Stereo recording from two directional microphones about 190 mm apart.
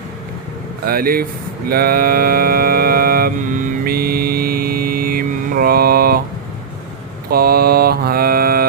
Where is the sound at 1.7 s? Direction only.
50° right (ahead or behind).